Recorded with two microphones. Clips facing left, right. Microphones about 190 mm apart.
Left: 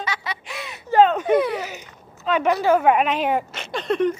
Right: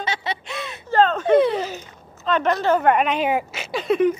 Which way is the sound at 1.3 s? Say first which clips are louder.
Right 3 dB; 25° right (ahead or behind).